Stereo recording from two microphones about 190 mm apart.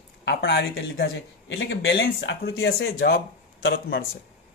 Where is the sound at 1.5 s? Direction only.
70° left (ahead or behind).